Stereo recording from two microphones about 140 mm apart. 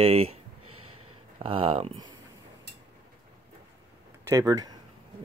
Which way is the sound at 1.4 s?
40° right (ahead or behind).